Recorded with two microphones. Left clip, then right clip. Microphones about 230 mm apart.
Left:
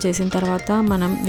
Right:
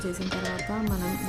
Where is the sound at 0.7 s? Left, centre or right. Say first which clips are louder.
Left 10 dB; left.